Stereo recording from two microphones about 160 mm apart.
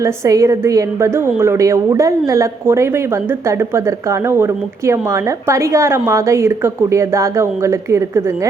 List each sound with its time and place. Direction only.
0.0 s a woman's voice: 20° right (ahead or behind)